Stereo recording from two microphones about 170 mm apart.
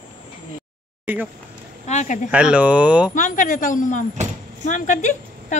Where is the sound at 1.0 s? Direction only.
10° right (ahead or behind).